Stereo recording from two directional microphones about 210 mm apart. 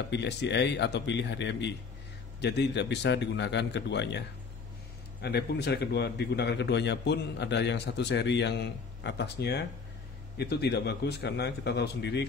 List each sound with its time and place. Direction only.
0.1 s speech: 55° left (ahead or behind)
5.2 s a man's voice: 50° left (ahead or behind)